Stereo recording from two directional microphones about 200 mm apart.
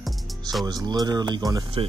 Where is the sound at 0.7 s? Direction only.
20° right (ahead or behind).